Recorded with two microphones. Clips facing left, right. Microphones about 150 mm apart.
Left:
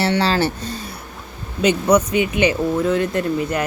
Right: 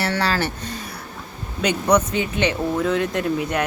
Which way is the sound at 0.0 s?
25° left (ahead or behind).